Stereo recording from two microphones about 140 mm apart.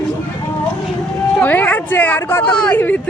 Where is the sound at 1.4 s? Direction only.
10° left (ahead or behind).